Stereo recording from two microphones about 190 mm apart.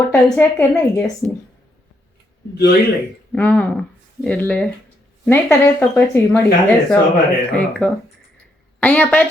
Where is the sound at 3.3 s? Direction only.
5° left (ahead or behind).